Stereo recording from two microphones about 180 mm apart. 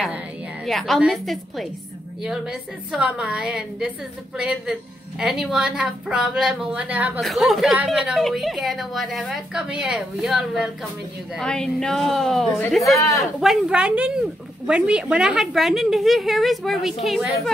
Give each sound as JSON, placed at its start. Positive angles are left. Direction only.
{"t": 0.7, "sound": "a woman's voice", "side_deg": 0}
{"t": 12.9, "sound": "speech", "side_deg": 20}
{"t": 13.4, "sound": "a woman's voice", "side_deg": -5}